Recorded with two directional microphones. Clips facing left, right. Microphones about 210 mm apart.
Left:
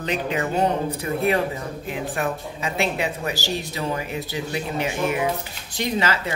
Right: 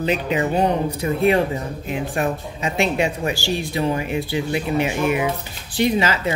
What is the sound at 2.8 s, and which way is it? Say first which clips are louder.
Speech: right 5 dB; 15° right (ahead or behind).